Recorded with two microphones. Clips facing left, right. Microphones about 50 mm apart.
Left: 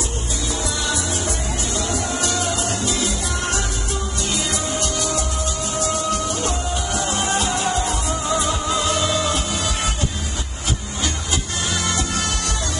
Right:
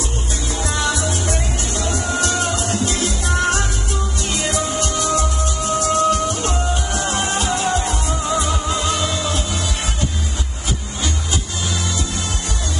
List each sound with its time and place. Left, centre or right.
2.1 s music: right
8.6 s music: centre